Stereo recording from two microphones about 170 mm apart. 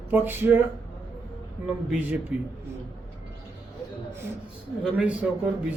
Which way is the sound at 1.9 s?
10° right (ahead or behind).